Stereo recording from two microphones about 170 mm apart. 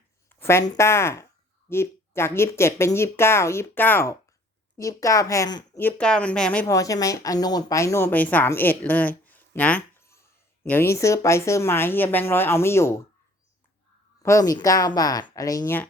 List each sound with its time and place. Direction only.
0.3 s speech: 15° left (ahead or behind)
5.8 s speech: 5° left (ahead or behind)
6.7 s speech: 20° left (ahead or behind)
14.2 s speech: 15° left (ahead or behind)